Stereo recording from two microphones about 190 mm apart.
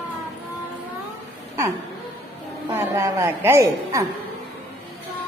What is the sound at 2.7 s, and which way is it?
A woman's voice, 15° right (ahead or behind).